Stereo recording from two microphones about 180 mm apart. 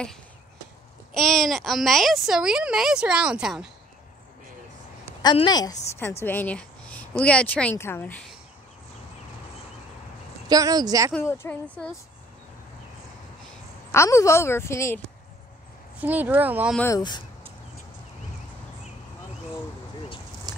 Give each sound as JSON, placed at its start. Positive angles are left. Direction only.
{"t": 1.1, "sound": "a child's voice", "side_deg": 0}
{"t": 5.2, "sound": "a woman's voice", "side_deg": 25}
{"t": 10.5, "sound": "a woman's voice", "side_deg": -20}
{"t": 11.1, "sound": "speech", "side_deg": 15}
{"t": 13.9, "sound": "speech", "side_deg": 15}
{"t": 16.0, "sound": "speech", "side_deg": -10}
{"t": 16.7, "sound": "speech", "side_deg": 15}
{"t": 20.5, "sound": "pig", "side_deg": -20}